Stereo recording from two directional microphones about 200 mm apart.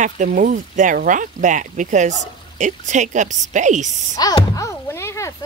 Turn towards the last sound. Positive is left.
turn(degrees=15)  # may be behind; listen again after turning